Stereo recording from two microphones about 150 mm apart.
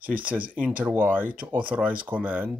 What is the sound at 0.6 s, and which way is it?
Speech, 10° right (ahead or behind).